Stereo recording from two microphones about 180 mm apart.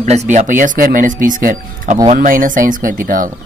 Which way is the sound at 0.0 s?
40° right (ahead or behind).